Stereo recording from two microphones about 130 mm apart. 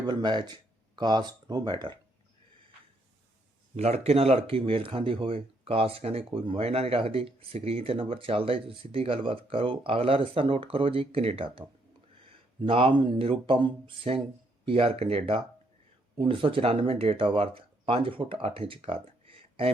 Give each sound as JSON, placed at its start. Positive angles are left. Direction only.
{"t": 0.0, "sound": "speech", "side_deg": -35}
{"t": 3.8, "sound": "speech", "side_deg": -55}
{"t": 19.4, "sound": "a sound", "side_deg": -45}